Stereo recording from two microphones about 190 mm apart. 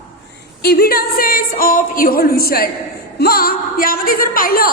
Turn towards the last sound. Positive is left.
turn(degrees=50)  # may be behind; listen again after turning